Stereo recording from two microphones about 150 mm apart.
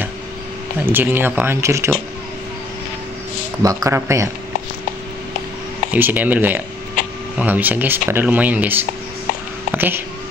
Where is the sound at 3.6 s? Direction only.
25° right (ahead or behind).